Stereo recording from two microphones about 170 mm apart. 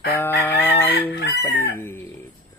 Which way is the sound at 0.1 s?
10° left (ahead or behind).